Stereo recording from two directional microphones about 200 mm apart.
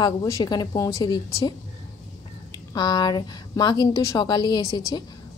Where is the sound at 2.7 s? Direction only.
20° left (ahead or behind).